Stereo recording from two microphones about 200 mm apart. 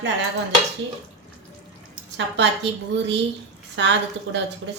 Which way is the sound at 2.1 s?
60° right (ahead or behind).